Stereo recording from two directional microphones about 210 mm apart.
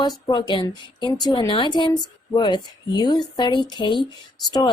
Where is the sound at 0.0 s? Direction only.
20° left (ahead or behind).